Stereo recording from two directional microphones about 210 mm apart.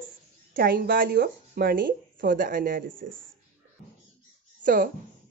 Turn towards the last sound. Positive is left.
turn(degrees=-40)  # may be behind; listen again after turning